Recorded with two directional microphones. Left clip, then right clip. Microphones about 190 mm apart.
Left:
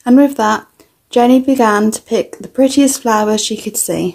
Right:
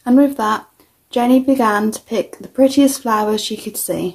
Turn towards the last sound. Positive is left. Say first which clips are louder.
# left 4 dB
turn(degrees=30)  # may be behind; listen again after turning